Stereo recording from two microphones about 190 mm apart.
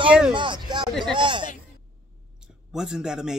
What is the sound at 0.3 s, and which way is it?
Speech, 25° right (ahead or behind).